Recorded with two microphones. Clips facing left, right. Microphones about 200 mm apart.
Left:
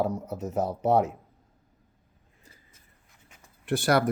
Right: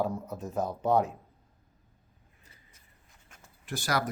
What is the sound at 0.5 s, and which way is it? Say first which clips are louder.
Speech: left 3 dB; 80° left.